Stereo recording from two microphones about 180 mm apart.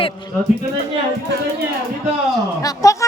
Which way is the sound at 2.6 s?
20° left (ahead or behind).